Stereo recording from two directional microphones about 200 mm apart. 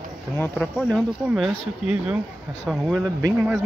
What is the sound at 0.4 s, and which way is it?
Speech, centre (ahead or behind).